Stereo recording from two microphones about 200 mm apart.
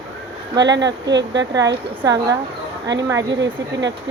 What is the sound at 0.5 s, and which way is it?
Speech, 65° right (ahead or behind).